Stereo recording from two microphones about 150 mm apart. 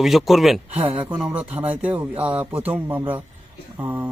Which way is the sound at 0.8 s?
10° right (ahead or behind).